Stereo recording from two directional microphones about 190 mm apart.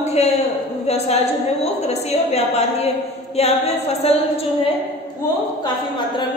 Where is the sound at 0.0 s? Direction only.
35° left (ahead or behind).